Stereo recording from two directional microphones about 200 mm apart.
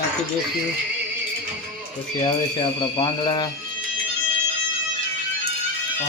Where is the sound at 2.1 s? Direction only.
25° left (ahead or behind).